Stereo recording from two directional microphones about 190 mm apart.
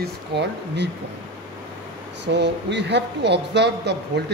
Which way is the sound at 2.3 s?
65° right (ahead or behind).